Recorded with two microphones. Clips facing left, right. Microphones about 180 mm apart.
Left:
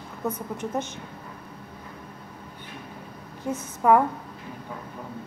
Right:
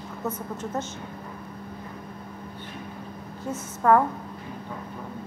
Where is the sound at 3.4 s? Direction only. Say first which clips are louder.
Left 1 dB; 15° left (ahead or behind).